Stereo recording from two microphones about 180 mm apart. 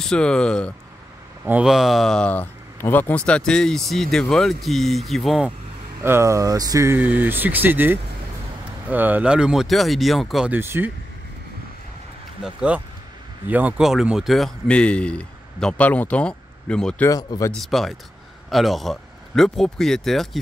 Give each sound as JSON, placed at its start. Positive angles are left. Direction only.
{"t": 0.0, "sound": "speech", "side_deg": 5}
{"t": 1.4, "sound": "speech", "side_deg": -5}
{"t": 6.0, "sound": "speech", "side_deg": -15}
{"t": 12.4, "sound": "speech", "side_deg": -5}
{"t": 17.1, "sound": "speech", "side_deg": 20}
{"t": 17.6, "sound": "speech", "side_deg": 0}